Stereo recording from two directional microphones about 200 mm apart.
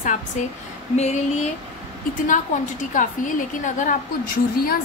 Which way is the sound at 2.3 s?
40° left (ahead or behind).